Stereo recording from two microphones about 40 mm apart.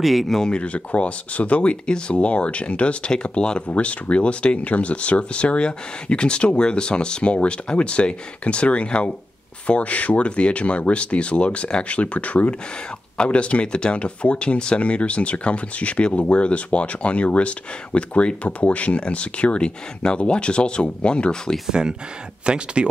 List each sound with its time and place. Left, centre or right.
0.0 s speech: centre
0.5 s speech: left
21.6 s speech: centre